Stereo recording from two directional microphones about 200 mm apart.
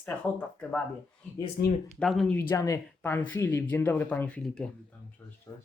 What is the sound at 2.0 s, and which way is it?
Speech, 5° left (ahead or behind).